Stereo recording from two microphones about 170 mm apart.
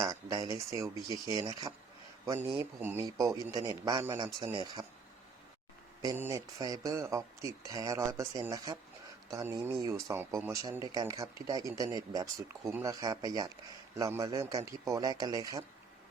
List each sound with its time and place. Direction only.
0.0 s speech: 20° right (ahead or behind)
6.0 s speech: 20° right (ahead or behind)